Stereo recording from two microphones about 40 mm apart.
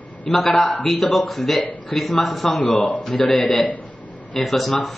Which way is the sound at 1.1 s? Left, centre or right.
Centre.